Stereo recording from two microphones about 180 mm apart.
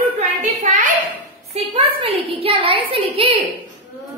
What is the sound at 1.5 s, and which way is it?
A woman's voice, 30° right (ahead or behind).